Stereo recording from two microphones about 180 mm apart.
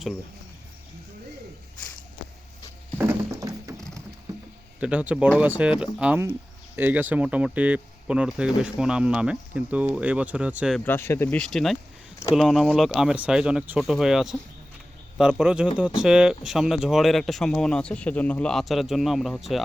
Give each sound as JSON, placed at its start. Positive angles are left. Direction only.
{"t": 3.0, "sound": "music", "side_deg": -15}
{"t": 4.8, "sound": "speech", "side_deg": -5}
{"t": 10.8, "sound": "speech", "side_deg": 10}